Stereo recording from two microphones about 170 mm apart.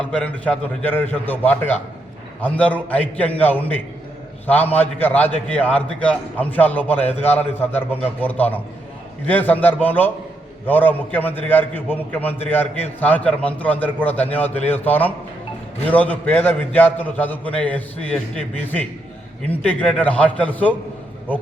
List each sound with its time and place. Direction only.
0.0 s a man's voice: 5° left (ahead or behind)